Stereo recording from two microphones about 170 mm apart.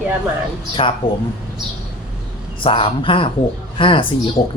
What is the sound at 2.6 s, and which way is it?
Speech, 30° left (ahead or behind).